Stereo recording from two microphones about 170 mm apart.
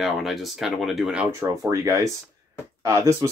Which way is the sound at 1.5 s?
20° right (ahead or behind).